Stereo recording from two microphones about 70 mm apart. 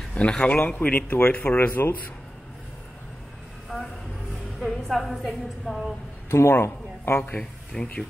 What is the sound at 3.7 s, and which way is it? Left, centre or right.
Vehicle, centre.